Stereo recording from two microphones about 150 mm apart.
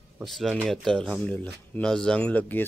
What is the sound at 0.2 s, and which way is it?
Speech, centre (ahead or behind).